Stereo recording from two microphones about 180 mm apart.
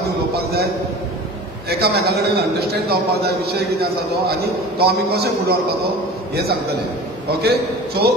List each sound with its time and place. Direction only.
1.7 s a man's voice: 60° right (ahead or behind)